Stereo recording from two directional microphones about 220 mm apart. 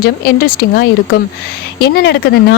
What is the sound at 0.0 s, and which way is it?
Speech, 45° left (ahead or behind).